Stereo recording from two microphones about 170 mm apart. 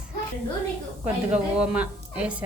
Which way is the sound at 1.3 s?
5° right (ahead or behind).